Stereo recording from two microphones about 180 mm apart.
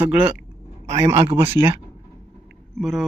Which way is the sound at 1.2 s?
30° right (ahead or behind).